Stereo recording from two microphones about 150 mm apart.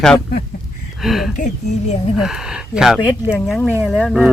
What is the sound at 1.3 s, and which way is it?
Speech, 55° left (ahead or behind).